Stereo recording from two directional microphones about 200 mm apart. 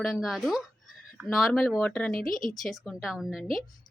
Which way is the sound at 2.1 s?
45° left (ahead or behind).